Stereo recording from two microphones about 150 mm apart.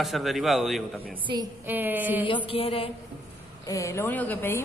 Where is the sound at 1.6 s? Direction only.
10° right (ahead or behind).